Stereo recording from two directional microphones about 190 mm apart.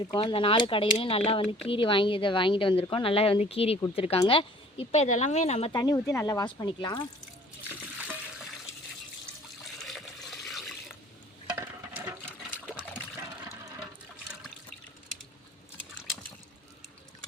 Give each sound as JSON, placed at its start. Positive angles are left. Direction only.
{"t": 0.1, "sound": "speech", "side_deg": 25}
{"t": 9.7, "sound": "water", "side_deg": 0}
{"t": 11.5, "sound": "water", "side_deg": -10}